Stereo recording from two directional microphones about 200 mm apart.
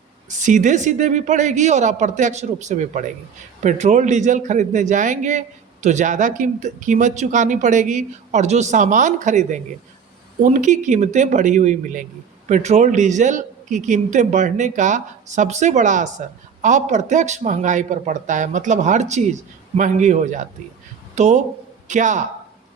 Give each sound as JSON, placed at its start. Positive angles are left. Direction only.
{"t": 0.3, "sound": "a man's voice", "side_deg": -40}